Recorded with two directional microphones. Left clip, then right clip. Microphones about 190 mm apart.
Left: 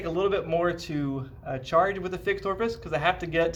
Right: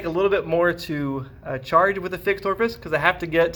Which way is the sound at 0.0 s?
45° right (ahead or behind).